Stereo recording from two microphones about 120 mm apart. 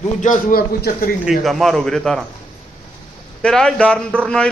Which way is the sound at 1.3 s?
Centre (ahead or behind).